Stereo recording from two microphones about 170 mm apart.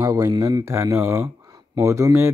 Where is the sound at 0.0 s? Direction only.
20° right (ahead or behind).